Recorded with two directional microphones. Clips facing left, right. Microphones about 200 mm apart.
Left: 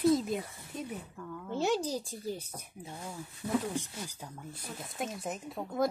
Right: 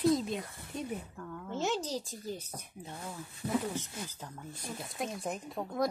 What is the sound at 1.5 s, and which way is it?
Speech, 15° left (ahead or behind).